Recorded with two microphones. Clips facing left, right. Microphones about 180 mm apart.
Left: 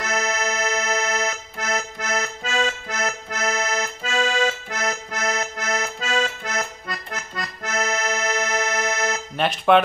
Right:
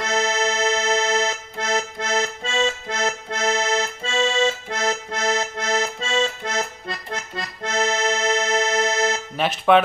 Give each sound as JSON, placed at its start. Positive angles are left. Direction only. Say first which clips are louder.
{"t": 0.0, "sound": "accordion", "louder": "right 3 dB", "side_deg": -25}
{"t": 9.4, "sound": "speech", "louder": "even", "side_deg": 0}